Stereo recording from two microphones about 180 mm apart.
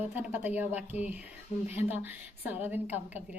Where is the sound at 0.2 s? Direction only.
10° right (ahead or behind).